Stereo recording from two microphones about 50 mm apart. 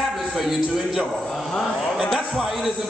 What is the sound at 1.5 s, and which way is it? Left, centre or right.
Speech, centre.